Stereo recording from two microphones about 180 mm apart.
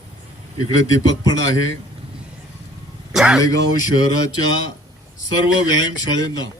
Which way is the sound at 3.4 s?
20° left (ahead or behind).